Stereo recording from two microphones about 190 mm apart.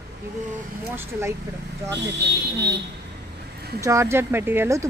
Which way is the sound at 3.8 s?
15° right (ahead or behind).